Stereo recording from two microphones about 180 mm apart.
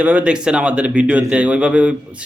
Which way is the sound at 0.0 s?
10° right (ahead or behind).